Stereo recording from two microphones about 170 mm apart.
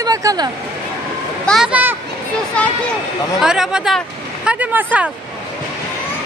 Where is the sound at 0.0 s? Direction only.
20° right (ahead or behind).